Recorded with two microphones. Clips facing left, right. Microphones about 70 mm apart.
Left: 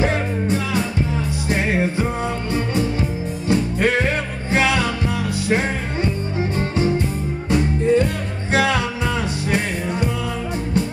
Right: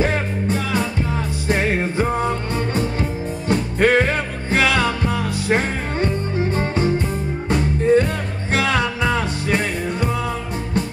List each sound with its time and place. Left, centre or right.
1.5 s music: right